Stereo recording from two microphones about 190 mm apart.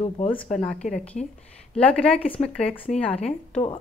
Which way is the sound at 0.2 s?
35° left (ahead or behind).